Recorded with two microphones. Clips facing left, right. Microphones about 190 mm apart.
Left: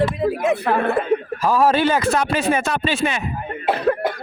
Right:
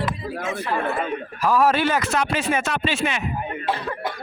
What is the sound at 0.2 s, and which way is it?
Speech, 65° left (ahead or behind).